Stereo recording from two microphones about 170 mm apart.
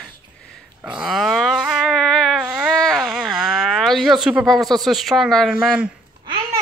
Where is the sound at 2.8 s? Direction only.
5° left (ahead or behind).